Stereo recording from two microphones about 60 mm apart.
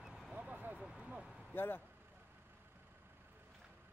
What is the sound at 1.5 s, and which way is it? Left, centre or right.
Speech, left.